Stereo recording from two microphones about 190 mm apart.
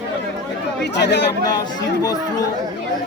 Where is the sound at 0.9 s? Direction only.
65° left (ahead or behind).